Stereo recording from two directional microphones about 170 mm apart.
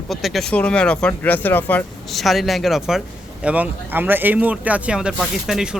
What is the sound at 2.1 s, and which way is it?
A man's voice, centre (ahead or behind).